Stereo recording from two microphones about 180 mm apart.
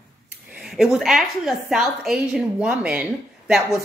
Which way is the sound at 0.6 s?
Centre (ahead or behind).